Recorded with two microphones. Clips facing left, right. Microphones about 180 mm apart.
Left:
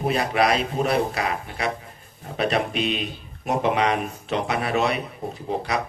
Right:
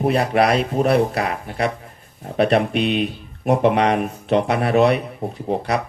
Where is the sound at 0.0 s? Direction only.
60° right (ahead or behind).